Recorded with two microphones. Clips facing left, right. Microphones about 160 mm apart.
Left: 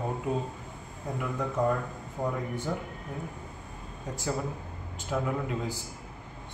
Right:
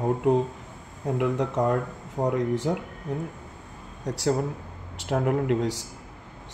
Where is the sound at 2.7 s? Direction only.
60° right (ahead or behind).